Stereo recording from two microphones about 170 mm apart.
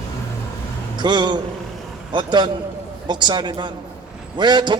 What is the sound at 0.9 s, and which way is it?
A man's voice, 25° right (ahead or behind).